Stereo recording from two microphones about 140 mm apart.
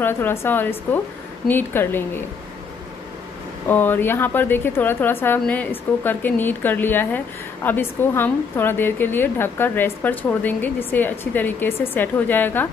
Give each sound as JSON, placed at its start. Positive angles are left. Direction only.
{"t": 0.0, "sound": "a woman's voice", "side_deg": 15}
{"t": 3.6, "sound": "a woman's voice", "side_deg": 15}